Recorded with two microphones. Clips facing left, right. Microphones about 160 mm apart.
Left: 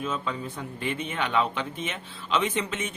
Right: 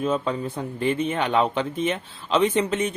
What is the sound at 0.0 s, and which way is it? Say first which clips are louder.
Speech: right 7 dB; 40° right (ahead or behind).